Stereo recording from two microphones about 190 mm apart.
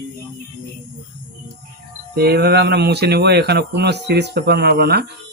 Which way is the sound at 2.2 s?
55° right (ahead or behind).